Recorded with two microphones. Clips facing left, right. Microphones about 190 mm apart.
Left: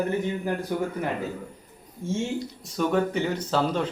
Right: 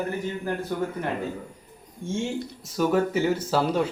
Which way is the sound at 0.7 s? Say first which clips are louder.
Even; 10° left (ahead or behind).